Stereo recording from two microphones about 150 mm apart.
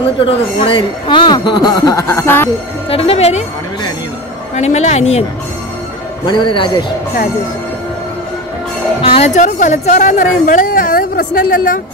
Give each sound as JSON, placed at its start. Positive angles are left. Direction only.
{"t": 0.2, "sound": "speech", "side_deg": 35}
{"t": 2.9, "sound": "a man's voice", "side_deg": 40}
{"t": 4.6, "sound": "speech", "side_deg": 45}
{"t": 6.2, "sound": "a man's voice", "side_deg": 30}
{"t": 9.0, "sound": "a woman's voice", "side_deg": 40}